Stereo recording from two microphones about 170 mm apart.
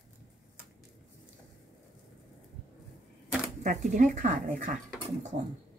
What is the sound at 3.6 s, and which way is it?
Speech, 50° right (ahead or behind).